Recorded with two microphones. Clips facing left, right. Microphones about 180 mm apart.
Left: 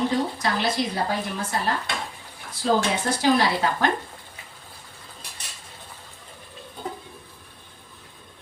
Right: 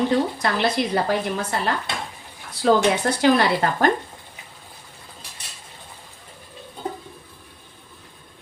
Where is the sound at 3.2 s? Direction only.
60° right (ahead or behind).